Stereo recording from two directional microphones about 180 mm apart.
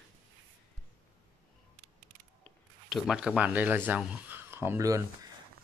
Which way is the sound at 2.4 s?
Centre (ahead or behind).